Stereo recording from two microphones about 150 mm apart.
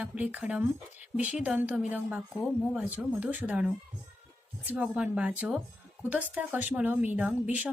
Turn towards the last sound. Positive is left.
turn(degrees=-10)  # may be behind; listen again after turning